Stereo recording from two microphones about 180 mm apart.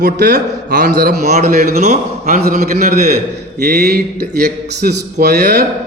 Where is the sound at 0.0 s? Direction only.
65° right (ahead or behind); by 1.5 s 40° right (ahead or behind).